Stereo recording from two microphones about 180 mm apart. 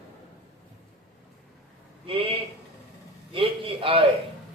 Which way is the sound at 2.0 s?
30° right (ahead or behind).